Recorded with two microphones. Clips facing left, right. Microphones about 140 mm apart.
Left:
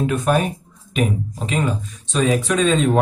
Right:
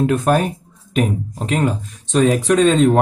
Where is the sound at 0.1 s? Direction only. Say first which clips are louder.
Right 3 dB; 45° right (ahead or behind).